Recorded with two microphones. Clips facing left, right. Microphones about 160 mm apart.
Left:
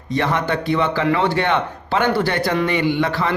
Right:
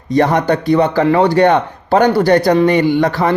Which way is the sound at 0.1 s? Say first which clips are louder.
Right 7 dB; 40° right (ahead or behind).